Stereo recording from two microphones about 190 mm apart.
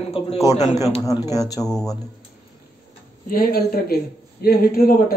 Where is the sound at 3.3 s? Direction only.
55° left (ahead or behind).